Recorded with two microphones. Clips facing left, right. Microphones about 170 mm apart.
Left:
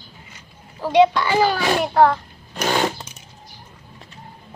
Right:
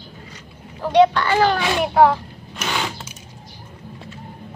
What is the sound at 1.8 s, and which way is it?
Speech, 5° right (ahead or behind).